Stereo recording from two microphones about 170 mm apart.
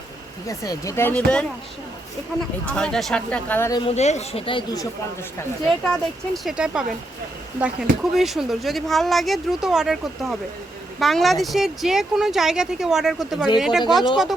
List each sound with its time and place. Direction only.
0.4 s speech: 20° left (ahead or behind)
2.6 s speech: 5° left (ahead or behind)
3.7 s speech: 25° left (ahead or behind)
3.9 s speech: 40° left (ahead or behind); by 4.9 s 25° left (ahead or behind)
5.8 s speech: 5° left (ahead or behind)